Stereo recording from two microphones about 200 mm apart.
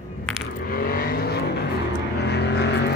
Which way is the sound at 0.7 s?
45° left (ahead or behind).